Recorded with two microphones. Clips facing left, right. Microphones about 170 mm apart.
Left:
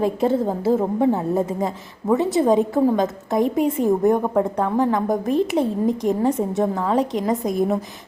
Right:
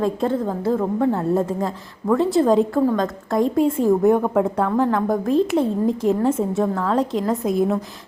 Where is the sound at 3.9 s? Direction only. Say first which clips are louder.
Right 1 dB; centre (ahead or behind).